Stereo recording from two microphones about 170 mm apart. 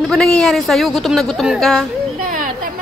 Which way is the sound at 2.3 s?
50° right (ahead or behind).